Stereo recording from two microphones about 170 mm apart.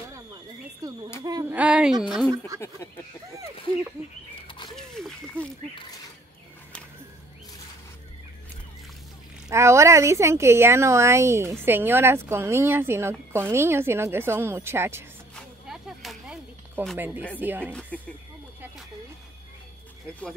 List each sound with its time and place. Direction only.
0.8 s a sound: 20° right (ahead or behind)
1.2 s speech: 20° right (ahead or behind)
1.5 s speech: 10° right (ahead or behind)
2.3 s speech: 20° right (ahead or behind)
4.4 s dog: 30° left (ahead or behind)
4.6 s a sound: centre (ahead or behind)
9.5 s speech: 15° right (ahead or behind)
15.3 s a sound: centre (ahead or behind)
16.9 s speech: 10° right (ahead or behind)